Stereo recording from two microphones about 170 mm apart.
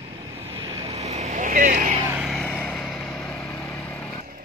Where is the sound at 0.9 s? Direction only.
40° right (ahead or behind).